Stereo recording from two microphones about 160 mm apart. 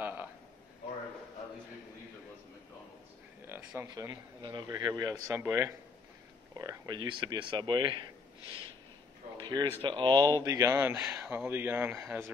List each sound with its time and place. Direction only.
0.0 s a sound: 10° right (ahead or behind)
3.4 s speech: 15° right (ahead or behind)
9.4 s speech: 25° right (ahead or behind); by 12.2 s 5° right (ahead or behind)